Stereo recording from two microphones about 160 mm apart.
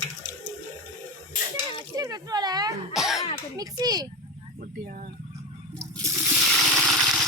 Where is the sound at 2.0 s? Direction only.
25° right (ahead or behind).